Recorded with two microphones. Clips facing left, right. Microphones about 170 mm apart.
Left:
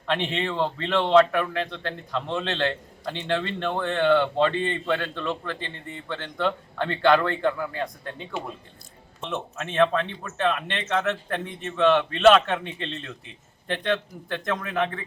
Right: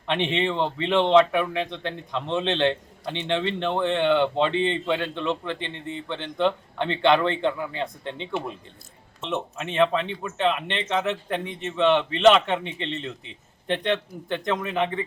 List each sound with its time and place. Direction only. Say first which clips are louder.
0.1 s speech: right 2 dB; 20° right (ahead or behind)